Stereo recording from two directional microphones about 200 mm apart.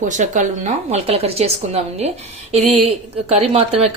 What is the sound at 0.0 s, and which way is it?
A woman's voice, 40° right (ahead or behind).